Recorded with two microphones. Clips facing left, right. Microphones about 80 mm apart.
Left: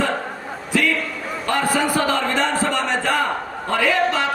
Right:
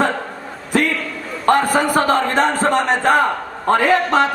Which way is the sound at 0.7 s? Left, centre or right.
Right.